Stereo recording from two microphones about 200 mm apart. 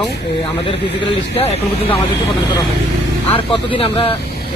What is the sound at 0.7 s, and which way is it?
Speech, 25° left (ahead or behind).